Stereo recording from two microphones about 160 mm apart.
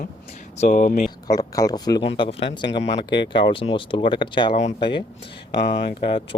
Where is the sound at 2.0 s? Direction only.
35° left (ahead or behind).